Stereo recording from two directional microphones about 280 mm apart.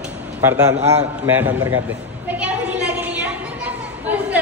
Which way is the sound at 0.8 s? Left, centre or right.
Right.